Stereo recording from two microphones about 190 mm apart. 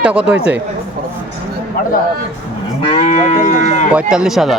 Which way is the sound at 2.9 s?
35° left (ahead or behind).